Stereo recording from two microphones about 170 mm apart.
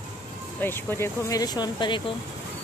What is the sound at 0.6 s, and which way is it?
Speech, 15° left (ahead or behind).